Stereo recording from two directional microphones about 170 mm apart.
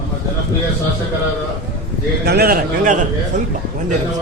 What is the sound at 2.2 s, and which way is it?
A man's voice, 65° right (ahead or behind).